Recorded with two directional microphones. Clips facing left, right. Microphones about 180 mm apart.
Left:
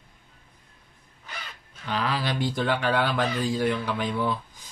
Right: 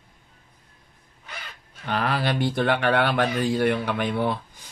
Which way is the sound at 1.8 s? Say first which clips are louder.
Right 3 dB; 60° right (ahead or behind).